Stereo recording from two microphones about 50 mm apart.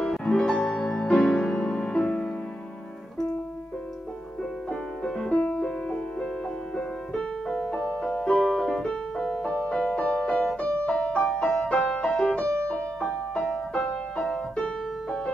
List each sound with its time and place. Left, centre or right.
0.0 s music: centre
4.6 s music: centre
7.5 s piano: centre
11.7 s music: left